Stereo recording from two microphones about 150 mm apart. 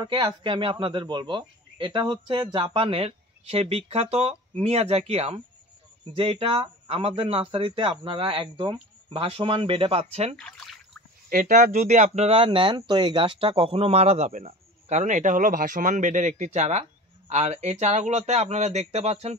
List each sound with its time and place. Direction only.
0.0 s speech: 35° right (ahead or behind)
10.3 s a sound: centre (ahead or behind)
11.2 s a man's voice: 65° right (ahead or behind); by 19.3 s 45° right (ahead or behind)